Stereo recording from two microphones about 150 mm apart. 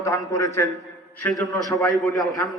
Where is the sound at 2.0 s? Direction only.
25° left (ahead or behind).